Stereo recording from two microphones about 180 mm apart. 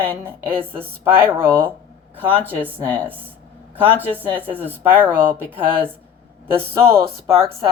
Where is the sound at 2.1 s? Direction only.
10° left (ahead or behind).